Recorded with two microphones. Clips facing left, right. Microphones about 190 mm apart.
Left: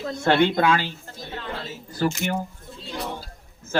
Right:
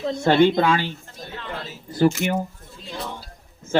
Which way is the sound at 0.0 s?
25° right (ahead or behind).